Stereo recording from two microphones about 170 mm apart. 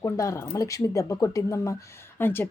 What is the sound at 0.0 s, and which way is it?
Speech, 15° left (ahead or behind).